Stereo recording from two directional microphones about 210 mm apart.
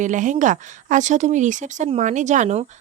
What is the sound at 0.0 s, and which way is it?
Speech, 35° right (ahead or behind).